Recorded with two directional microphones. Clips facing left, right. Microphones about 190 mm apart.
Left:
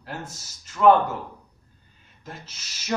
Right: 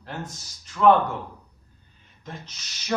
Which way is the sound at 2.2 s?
5° left (ahead or behind).